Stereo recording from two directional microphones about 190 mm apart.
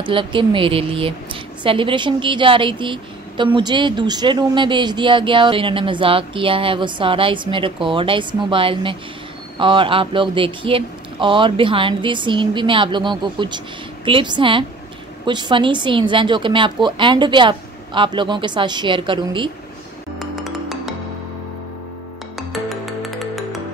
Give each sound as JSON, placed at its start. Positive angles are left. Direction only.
{"t": 0.0, "sound": "a woman's voice", "side_deg": -25}
{"t": 20.2, "sound": "music", "side_deg": 0}
{"t": 22.5, "sound": "music", "side_deg": 0}